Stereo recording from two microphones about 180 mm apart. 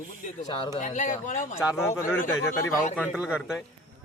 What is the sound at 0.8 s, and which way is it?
Speech, 45° left (ahead or behind).